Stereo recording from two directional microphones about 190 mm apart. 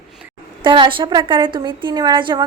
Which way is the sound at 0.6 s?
25° right (ahead or behind).